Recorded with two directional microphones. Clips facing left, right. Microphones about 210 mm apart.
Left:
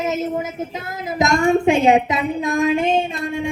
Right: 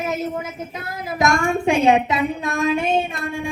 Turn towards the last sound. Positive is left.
turn(degrees=20)  # may be behind; listen again after turning